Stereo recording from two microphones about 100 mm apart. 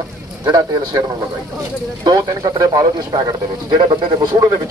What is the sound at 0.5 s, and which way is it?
Speech, 40° right (ahead or behind).